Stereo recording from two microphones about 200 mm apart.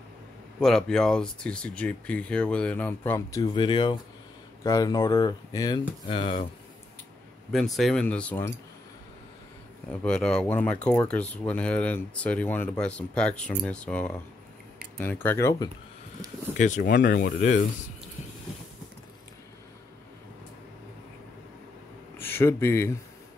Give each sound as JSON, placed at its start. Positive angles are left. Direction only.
{"t": 0.6, "sound": "speech", "side_deg": 5}
{"t": 7.5, "sound": "speech", "side_deg": 0}
{"t": 10.0, "sound": "speech", "side_deg": 5}
{"t": 16.5, "sound": "speech", "side_deg": 40}
{"t": 22.2, "sound": "speech", "side_deg": 10}